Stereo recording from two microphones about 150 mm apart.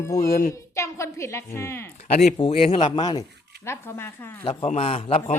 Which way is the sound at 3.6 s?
15° left (ahead or behind).